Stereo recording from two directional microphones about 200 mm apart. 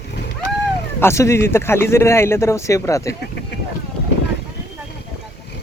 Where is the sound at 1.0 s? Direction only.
15° left (ahead or behind).